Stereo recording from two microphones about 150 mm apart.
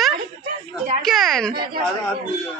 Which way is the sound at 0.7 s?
Centre (ahead or behind).